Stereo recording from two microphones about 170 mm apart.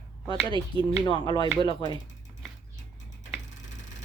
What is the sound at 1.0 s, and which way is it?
Speech, 30° left (ahead or behind).